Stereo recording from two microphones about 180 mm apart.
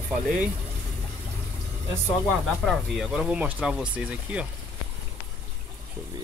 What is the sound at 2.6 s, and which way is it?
Speech, centre (ahead or behind).